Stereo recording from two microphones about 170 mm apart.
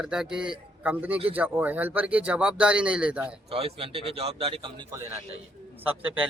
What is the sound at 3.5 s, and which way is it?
A man's voice, 35° right (ahead or behind).